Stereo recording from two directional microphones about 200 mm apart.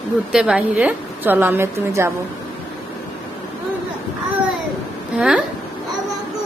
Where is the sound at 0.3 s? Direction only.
5° right (ahead or behind).